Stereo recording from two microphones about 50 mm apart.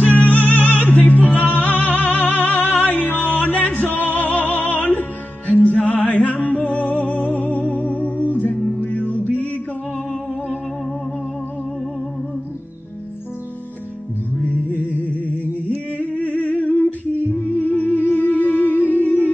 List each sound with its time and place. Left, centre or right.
0.0 s music: left
0.7 s a capella: left
1.6 s music: left
5.5 s music: left
16.0 s humming: left
18.0 s music: left